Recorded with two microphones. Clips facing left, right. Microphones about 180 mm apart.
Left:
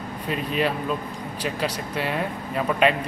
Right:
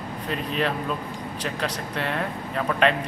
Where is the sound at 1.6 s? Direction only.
5° left (ahead or behind).